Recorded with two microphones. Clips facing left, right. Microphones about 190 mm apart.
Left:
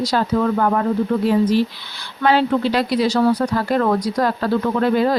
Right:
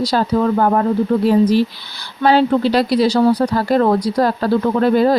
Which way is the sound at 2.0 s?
35° right (ahead or behind).